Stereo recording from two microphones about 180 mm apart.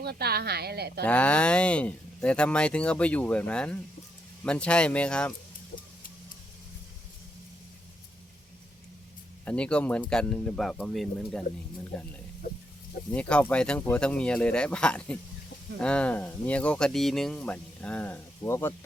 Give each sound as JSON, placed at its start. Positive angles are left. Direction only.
{"t": 0.0, "sound": "a woman's voice", "side_deg": -60}
{"t": 1.0, "sound": "speech", "side_deg": 5}
{"t": 9.4, "sound": "speech", "side_deg": 5}
{"t": 13.1, "sound": "speech", "side_deg": 5}